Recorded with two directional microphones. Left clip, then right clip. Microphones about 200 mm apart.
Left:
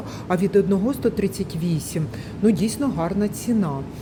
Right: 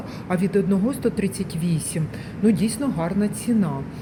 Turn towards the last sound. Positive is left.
turn(degrees=10)  # may be behind; listen again after turning